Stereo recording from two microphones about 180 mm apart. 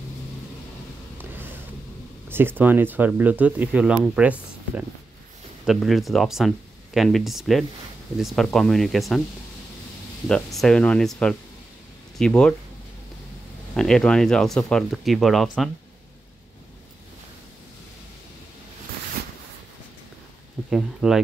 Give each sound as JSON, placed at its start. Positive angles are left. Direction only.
{"t": 1.1, "sound": "a sound", "side_deg": -10}
{"t": 2.2, "sound": "speech", "side_deg": -10}
{"t": 10.2, "sound": "speech", "side_deg": 5}
{"t": 13.7, "sound": "speech", "side_deg": 5}
{"t": 19.2, "sound": "a sound", "side_deg": -60}
{"t": 20.7, "sound": "speech", "side_deg": -5}